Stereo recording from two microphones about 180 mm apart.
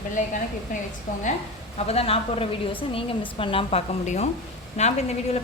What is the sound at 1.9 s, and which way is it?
A woman's voice, 35° left (ahead or behind).